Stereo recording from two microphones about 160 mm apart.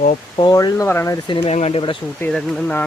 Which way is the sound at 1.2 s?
35° left (ahead or behind).